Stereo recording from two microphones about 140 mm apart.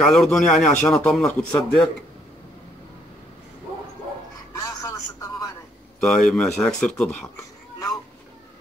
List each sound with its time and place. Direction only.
0.0 s speech: centre (ahead or behind)
4.6 s a sound: 25° left (ahead or behind)
5.9 s speech: 5° left (ahead or behind)